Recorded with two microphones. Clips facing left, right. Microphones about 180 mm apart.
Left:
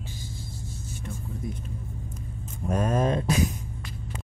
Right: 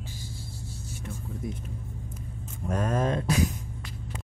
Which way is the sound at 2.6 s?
20° left (ahead or behind).